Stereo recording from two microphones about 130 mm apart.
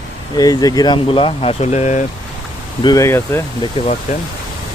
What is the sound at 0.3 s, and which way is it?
Speech, 30° left (ahead or behind).